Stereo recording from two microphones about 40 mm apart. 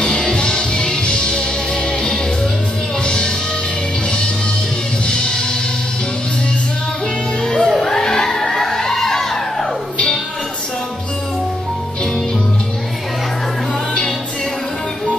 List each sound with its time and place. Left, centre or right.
0.0 s music: centre
5.0 s music: centre
7.4 s music: centre
7.8 s a sound: centre